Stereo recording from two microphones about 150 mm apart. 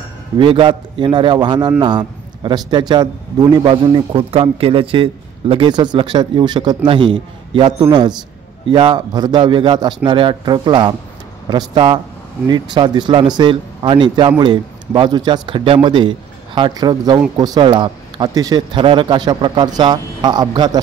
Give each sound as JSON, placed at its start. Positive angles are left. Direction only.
{"t": 0.4, "sound": "a man's voice", "side_deg": -35}